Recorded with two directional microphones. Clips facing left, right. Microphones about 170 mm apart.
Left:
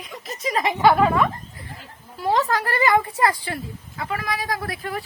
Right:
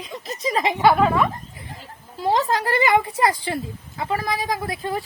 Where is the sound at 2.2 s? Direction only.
20° right (ahead or behind).